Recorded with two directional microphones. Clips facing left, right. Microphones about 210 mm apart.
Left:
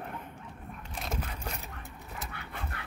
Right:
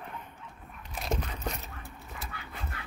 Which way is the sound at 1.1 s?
10° left (ahead or behind).